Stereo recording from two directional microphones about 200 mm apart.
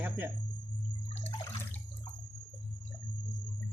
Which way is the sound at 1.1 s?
30° left (ahead or behind).